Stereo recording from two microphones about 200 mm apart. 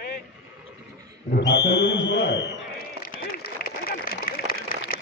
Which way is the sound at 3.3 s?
50° left (ahead or behind).